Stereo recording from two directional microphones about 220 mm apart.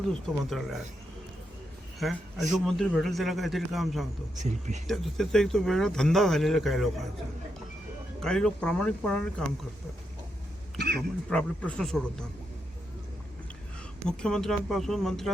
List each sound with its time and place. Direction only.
0.1 s a man's voice: centre (ahead or behind)
2.0 s a man's voice: centre (ahead or behind)
4.4 s speech: 30° right (ahead or behind)
4.9 s a man's voice: centre (ahead or behind)
8.2 s a man's voice: 5° left (ahead or behind)
10.8 s a sound: 45° right (ahead or behind)
11.3 s a man's voice: 5° left (ahead or behind)
14.2 s a man's voice: 5° left (ahead or behind)